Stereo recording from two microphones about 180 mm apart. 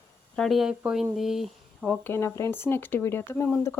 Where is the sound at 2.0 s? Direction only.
15° left (ahead or behind).